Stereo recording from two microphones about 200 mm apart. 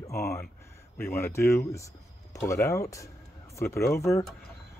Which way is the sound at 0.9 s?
10° left (ahead or behind).